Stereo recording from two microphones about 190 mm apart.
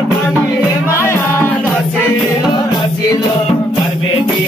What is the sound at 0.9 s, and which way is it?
Music, 15° left (ahead or behind).